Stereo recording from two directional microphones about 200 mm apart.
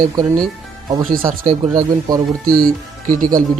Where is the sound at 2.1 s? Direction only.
20° right (ahead or behind).